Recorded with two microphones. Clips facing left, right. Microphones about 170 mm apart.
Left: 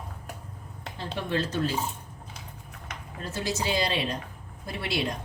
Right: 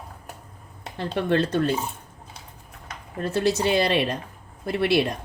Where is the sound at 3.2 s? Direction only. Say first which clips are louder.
Right 8 dB; 65° right (ahead or behind).